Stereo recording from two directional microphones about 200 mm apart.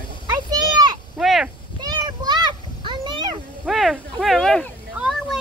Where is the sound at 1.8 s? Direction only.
20° right (ahead or behind).